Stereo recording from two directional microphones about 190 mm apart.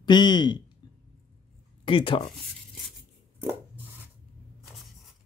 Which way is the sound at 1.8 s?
25° left (ahead or behind).